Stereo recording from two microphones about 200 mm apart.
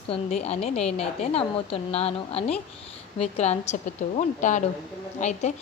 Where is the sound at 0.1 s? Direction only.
35° left (ahead or behind).